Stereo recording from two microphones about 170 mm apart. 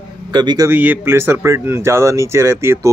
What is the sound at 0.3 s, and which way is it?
Speech, 25° right (ahead or behind).